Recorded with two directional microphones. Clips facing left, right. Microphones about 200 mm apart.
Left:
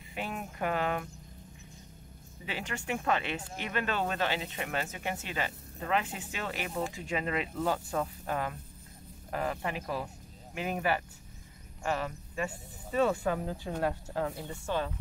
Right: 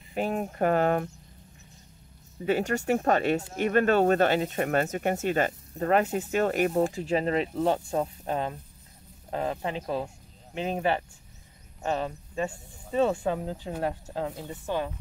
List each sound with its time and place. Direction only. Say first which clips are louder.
0.1 s speech: right 9 dB; 40° right (ahead or behind)
2.4 s speech: right 12 dB; 45° right (ahead or behind); by 14.9 s 15° right (ahead or behind)